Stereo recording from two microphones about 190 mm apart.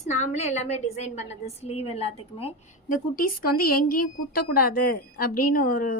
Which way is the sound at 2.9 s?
50° left (ahead or behind).